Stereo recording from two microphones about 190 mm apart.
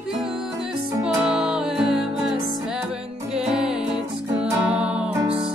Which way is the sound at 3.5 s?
Centre (ahead or behind).